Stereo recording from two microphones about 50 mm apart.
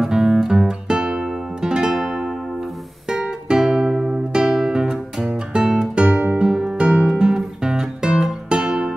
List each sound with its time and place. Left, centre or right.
0.0 s music: centre
2.0 s music: centre
3.1 s music: centre
6.3 s guitar: centre